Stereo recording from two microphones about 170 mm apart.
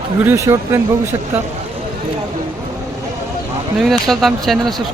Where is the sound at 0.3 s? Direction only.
15° right (ahead or behind).